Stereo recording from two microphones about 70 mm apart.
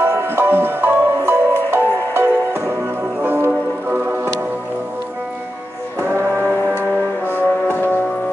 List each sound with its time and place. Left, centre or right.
0.0 s music: right
5.9 s music: right
6.5 s music: left